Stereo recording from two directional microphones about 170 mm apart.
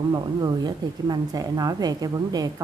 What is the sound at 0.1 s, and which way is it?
Speech, 25° right (ahead or behind).